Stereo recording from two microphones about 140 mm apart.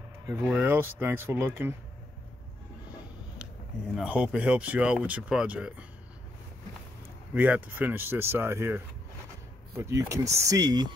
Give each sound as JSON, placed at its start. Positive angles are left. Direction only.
{"t": 0.5, "sound": "speech", "side_deg": -15}
{"t": 3.9, "sound": "speech", "side_deg": -10}
{"t": 7.3, "sound": "speech", "side_deg": -10}